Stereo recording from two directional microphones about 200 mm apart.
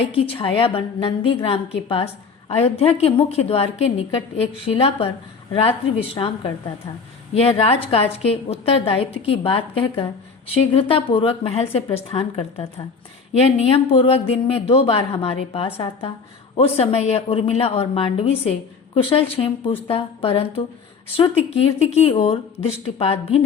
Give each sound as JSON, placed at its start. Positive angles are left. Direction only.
{"t": 0.0, "sound": "speech", "side_deg": 30}
{"t": 6.1, "sound": "a woman's voice", "side_deg": 25}